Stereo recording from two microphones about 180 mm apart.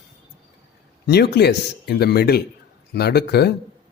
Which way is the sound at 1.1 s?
65° left (ahead or behind).